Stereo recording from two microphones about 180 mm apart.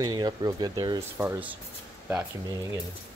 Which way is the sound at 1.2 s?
10° right (ahead or behind).